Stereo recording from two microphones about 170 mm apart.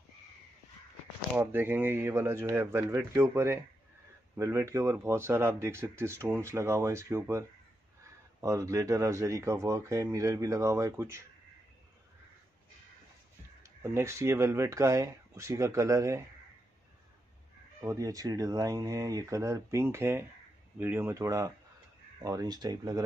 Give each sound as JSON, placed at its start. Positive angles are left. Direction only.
{"t": 1.3, "sound": "speech", "side_deg": -10}
{"t": 13.6, "sound": "speech", "side_deg": -15}
{"t": 17.8, "sound": "speech", "side_deg": -20}